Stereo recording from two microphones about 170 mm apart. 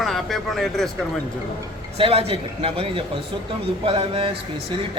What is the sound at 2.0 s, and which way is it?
A man's voice, 35° right (ahead or behind).